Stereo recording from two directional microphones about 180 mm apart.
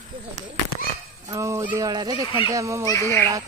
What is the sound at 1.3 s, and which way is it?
Speech, 15° right (ahead or behind).